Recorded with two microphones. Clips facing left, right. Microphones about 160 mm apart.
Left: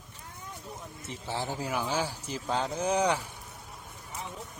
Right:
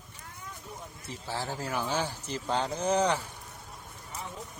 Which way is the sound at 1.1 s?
20° left (ahead or behind).